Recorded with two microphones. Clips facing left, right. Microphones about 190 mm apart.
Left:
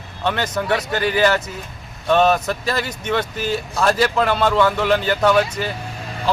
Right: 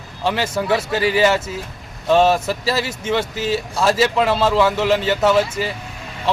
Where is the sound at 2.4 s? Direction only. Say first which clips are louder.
Right 2 dB; 5° right (ahead or behind).